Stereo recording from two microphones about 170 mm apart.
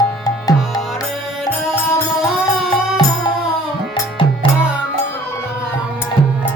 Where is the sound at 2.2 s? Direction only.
Centre (ahead or behind).